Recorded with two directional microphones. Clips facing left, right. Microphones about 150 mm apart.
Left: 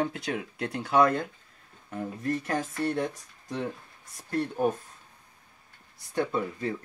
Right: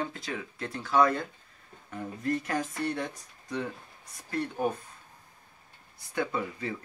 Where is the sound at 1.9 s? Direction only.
5° left (ahead or behind).